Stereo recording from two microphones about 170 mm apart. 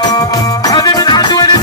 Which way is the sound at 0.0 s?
20° left (ahead or behind).